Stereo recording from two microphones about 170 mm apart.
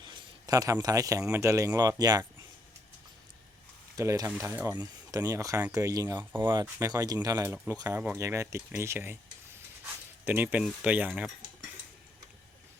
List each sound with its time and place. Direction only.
0.0 s speech: 25° right (ahead or behind)
3.9 s speech: 20° right (ahead or behind)
10.2 s speech: 10° right (ahead or behind)